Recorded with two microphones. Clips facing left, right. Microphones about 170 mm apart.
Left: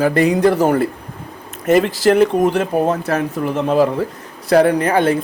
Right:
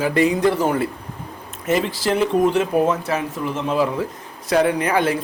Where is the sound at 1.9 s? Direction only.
45° left (ahead or behind).